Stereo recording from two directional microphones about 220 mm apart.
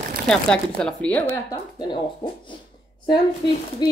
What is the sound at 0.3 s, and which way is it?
Speech, 5° left (ahead or behind).